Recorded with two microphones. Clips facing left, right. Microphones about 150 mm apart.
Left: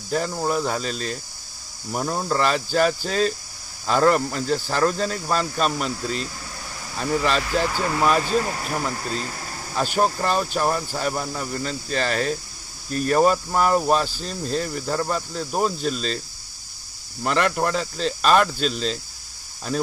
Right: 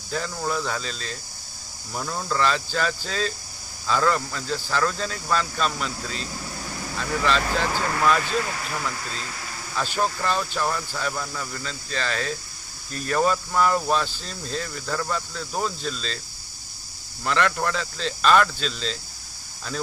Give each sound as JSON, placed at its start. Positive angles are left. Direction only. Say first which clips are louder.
{"t": 0.1, "sound": "speech", "louder": "left 4 dB", "side_deg": 35}
{"t": 2.0, "sound": "speech", "louder": "left 4 dB", "side_deg": 40}
{"t": 2.4, "sound": "speech", "louder": "left 4 dB", "side_deg": 50}
{"t": 7.0, "sound": "speech", "louder": "left 2 dB", "side_deg": 45}
{"t": 8.0, "sound": "speech", "louder": "left 3 dB", "side_deg": 30}
{"t": 15.6, "sound": "speech", "louder": "left 7 dB", "side_deg": 50}
{"t": 17.2, "sound": "speech", "louder": "left 2 dB", "side_deg": 40}